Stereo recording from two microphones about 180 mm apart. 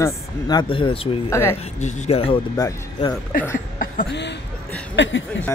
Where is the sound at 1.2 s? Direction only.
15° left (ahead or behind).